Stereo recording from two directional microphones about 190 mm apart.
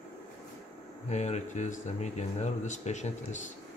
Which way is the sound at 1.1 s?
35° left (ahead or behind).